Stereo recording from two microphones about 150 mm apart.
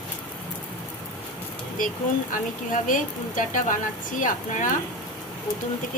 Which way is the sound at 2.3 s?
60° left (ahead or behind).